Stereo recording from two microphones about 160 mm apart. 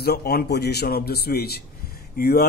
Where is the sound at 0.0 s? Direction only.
75° left (ahead or behind).